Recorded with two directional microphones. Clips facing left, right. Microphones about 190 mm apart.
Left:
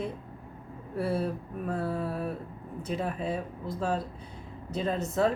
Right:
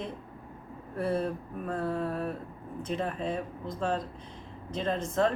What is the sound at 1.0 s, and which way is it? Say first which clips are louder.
A woman's voice: even; 5° left (ahead or behind).